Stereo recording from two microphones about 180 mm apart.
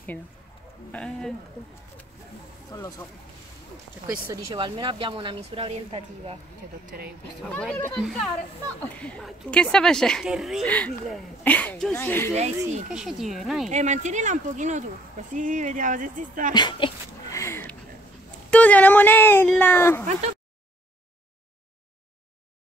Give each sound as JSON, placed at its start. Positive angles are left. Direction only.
{"t": 0.9, "sound": "a woman's voice", "side_deg": 5}
{"t": 2.7, "sound": "speech", "side_deg": 20}
{"t": 4.5, "sound": "a woman's voice", "side_deg": -25}
{"t": 7.5, "sound": "a woman's voice", "side_deg": 5}
{"t": 12.4, "sound": "speech", "side_deg": -40}
{"t": 12.9, "sound": "a woman's voice", "side_deg": -5}
{"t": 13.7, "sound": "speech", "side_deg": -40}
{"t": 16.5, "sound": "a sound", "side_deg": 25}
{"t": 18.5, "sound": "speech", "side_deg": 10}